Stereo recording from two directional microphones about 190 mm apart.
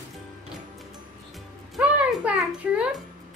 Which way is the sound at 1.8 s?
5° right (ahead or behind).